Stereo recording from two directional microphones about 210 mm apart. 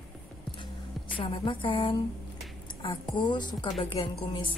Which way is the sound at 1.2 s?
25° left (ahead or behind).